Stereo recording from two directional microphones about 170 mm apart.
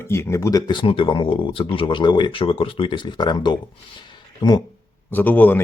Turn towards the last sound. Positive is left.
turn(degrees=10)  # may be behind; listen again after turning